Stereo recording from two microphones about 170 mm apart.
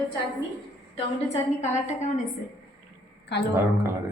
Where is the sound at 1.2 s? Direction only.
45° left (ahead or behind).